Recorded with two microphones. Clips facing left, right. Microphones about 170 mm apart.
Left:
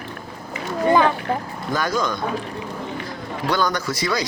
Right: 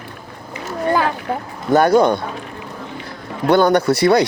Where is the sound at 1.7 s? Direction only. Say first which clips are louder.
Right 11 dB; 65° right (ahead or behind).